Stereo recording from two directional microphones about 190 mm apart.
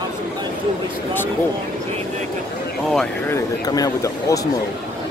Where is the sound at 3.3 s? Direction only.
20° left (ahead or behind).